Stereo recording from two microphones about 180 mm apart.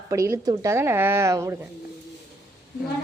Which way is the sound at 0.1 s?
15° right (ahead or behind).